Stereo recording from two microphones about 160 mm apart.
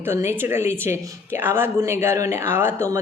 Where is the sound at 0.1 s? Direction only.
15° right (ahead or behind).